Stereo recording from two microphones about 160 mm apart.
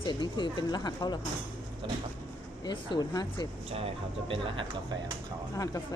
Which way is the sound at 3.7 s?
35° right (ahead or behind).